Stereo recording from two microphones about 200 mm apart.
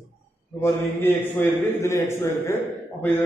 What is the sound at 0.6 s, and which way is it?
A man's voice, 10° left (ahead or behind).